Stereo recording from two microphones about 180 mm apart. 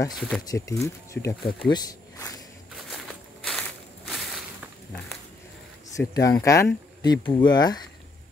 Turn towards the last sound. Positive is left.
turn(degrees=25)  # may be behind; listen again after turning